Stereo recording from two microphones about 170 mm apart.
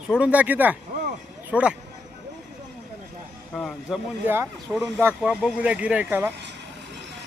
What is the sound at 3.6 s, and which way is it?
Speech, 5° left (ahead or behind).